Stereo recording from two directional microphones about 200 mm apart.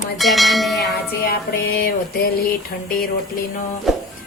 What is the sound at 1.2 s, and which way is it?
A woman's voice, 50° left (ahead or behind).